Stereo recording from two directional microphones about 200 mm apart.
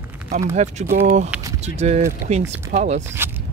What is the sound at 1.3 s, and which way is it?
Vehicle, 15° right (ahead or behind).